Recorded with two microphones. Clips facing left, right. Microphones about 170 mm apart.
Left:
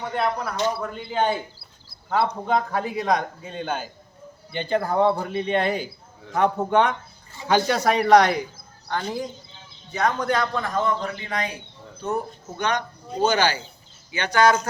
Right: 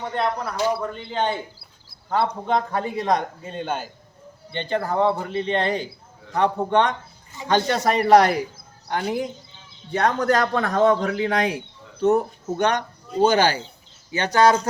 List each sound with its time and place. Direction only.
0.1 s a man's voice: 5° left (ahead or behind)
0.5 s speech: 5° right (ahead or behind)
1.1 s a man's voice: 10° left (ahead or behind); by 9.2 s 15° right (ahead or behind)
10.0 s speech: 40° right (ahead or behind)
10.5 s a man's voice: 70° right (ahead or behind)
12.1 s speech: 45° right (ahead or behind)